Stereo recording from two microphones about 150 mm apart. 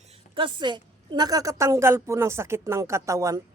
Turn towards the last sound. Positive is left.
turn(degrees=-20)  # may be behind; listen again after turning